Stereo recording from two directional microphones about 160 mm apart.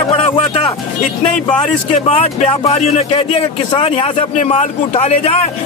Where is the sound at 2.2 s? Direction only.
40° left (ahead or behind).